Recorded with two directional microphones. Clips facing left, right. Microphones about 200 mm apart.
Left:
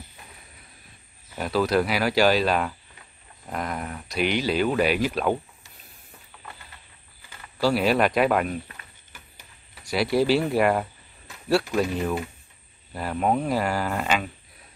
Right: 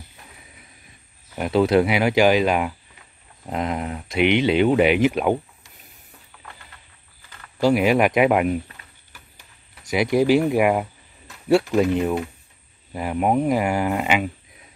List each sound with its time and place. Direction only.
1.3 s speech: 20° right (ahead or behind)
7.2 s a sound: 10° left (ahead or behind)
7.6 s speech: 15° right (ahead or behind)
9.8 s speech: 20° right (ahead or behind)